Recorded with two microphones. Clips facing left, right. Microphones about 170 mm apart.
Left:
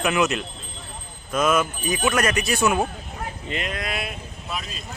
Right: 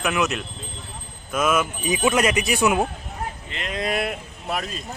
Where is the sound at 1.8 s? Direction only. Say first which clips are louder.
Right 2 dB; 20° right (ahead or behind).